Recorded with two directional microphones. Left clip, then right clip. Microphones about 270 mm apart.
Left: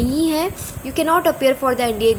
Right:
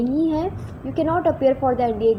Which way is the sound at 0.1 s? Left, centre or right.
Centre.